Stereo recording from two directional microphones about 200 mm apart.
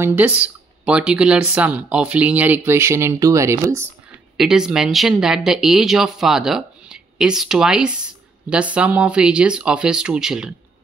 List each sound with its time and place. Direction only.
0.0 s speech: 10° right (ahead or behind)
4.4 s speech: 5° right (ahead or behind)